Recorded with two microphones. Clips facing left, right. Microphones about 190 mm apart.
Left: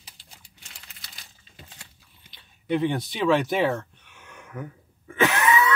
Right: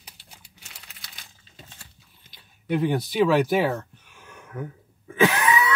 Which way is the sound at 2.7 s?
Centre (ahead or behind).